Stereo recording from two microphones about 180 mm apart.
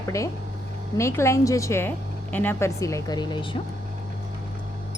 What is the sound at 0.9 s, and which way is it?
Speech, 15° left (ahead or behind).